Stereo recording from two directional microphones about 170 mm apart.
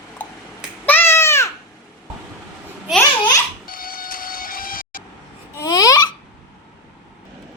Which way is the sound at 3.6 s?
55° left (ahead or behind).